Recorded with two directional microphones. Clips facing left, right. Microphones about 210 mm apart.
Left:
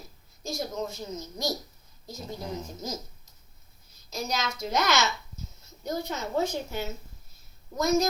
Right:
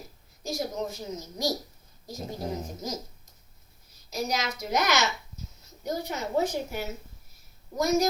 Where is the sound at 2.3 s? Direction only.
40° right (ahead or behind).